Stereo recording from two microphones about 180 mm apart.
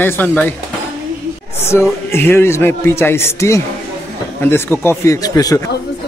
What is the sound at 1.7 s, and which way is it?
Speech, 15° left (ahead or behind).